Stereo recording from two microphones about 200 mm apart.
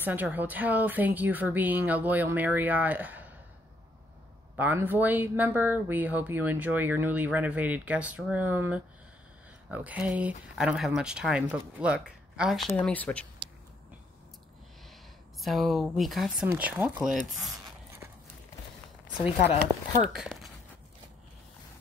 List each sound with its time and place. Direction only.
0.0 s speech: 10° right (ahead or behind)
4.6 s speech: 10° right (ahead or behind); by 13.3 s 5° left (ahead or behind)
15.4 s speech: centre (ahead or behind)
19.2 s speech: 30° left (ahead or behind)
20.0 s speech: centre (ahead or behind)